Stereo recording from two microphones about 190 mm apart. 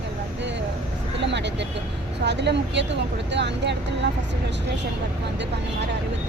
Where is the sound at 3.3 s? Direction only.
65° right (ahead or behind).